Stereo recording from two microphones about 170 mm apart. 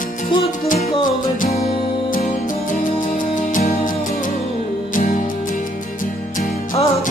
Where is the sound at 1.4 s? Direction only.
45° left (ahead or behind).